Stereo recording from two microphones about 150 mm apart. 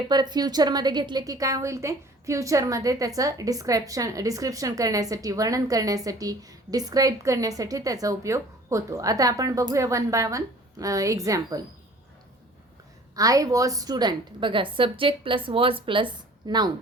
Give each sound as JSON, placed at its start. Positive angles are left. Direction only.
{"t": 0.1, "sound": "a woman's voice", "side_deg": -30}
{"t": 13.1, "sound": "a woman's voice", "side_deg": -25}